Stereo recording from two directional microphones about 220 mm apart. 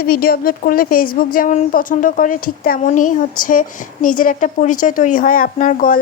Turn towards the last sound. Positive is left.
turn(degrees=35)  # may be behind; listen again after turning